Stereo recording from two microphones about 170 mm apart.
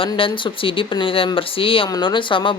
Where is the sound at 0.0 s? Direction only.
30° left (ahead or behind).